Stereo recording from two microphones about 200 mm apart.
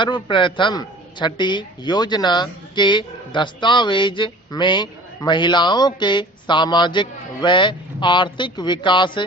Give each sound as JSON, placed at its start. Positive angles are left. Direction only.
{"t": 0.0, "sound": "a man's voice", "side_deg": 25}